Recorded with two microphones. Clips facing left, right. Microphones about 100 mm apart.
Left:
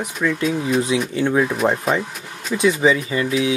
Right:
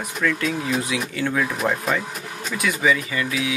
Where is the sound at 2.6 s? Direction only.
25° left (ahead or behind).